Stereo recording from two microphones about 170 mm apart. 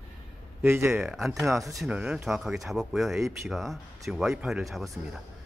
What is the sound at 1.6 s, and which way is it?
Speech, 20° right (ahead or behind).